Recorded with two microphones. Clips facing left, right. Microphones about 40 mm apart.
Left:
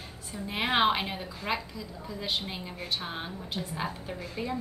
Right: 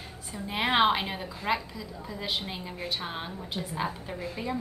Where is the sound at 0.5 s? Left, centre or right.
Centre.